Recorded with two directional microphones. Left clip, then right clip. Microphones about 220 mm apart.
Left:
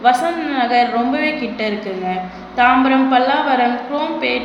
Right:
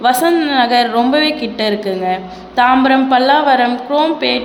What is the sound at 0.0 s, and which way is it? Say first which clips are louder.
A woman's voice: right 3 dB; 55° right (ahead or behind).